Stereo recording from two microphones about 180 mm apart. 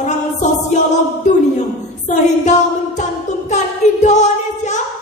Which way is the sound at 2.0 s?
40° left (ahead or behind).